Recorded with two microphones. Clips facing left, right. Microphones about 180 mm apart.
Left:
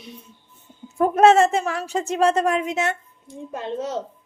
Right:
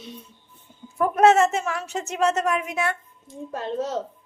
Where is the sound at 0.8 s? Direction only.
25° left (ahead or behind).